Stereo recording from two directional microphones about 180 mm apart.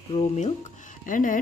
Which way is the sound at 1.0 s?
45° left (ahead or behind).